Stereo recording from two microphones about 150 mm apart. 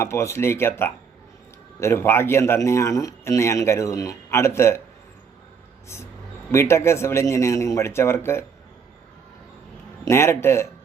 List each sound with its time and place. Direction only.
0.0 s a man's voice: 20° left (ahead or behind)
6.5 s speech: 20° left (ahead or behind)
10.1 s speech: 15° left (ahead or behind)